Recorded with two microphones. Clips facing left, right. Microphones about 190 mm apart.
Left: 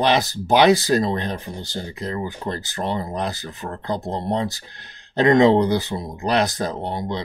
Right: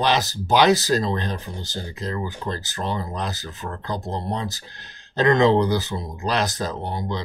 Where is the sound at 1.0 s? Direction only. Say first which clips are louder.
Left 2 dB; 15° left (ahead or behind).